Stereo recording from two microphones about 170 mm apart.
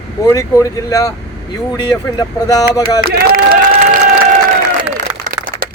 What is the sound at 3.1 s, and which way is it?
Speech, 60° right (ahead or behind).